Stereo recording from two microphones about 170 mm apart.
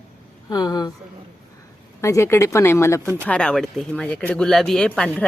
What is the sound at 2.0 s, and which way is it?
Speech, 15° left (ahead or behind).